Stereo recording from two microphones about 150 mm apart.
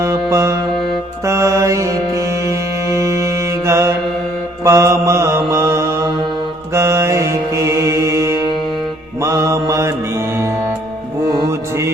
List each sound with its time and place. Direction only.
0.0 s music: 20° right (ahead or behind)
3.7 s mantra: 20° right (ahead or behind)